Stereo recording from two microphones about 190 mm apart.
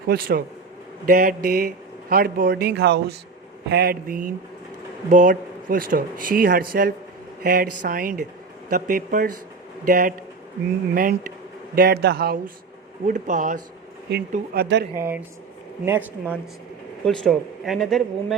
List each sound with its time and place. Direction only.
0.1 s a man's voice: 50° right (ahead or behind)
13.1 s speech: 40° right (ahead or behind)
14.3 s speech: 55° right (ahead or behind)
14.9 s speech: 15° right (ahead or behind)
17.1 s speech: centre (ahead or behind)